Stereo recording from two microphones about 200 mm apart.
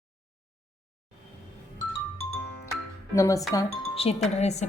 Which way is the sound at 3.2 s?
15° left (ahead or behind).